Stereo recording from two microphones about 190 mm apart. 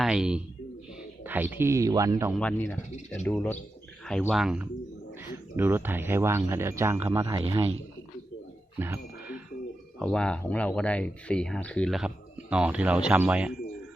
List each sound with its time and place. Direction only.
0.0 s speech: 5° right (ahead or behind)
2.3 s speech: 5° left (ahead or behind); by 7.4 s 15° right (ahead or behind)
7.4 s speech: 30° right (ahead or behind)
8.8 s music: 10° right (ahead or behind)
10.0 s speech: 5° left (ahead or behind)